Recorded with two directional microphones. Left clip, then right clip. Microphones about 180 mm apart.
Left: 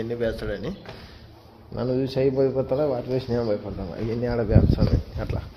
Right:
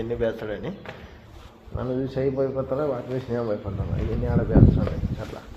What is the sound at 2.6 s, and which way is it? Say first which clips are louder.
Speech: left 2 dB; 40° left (ahead or behind).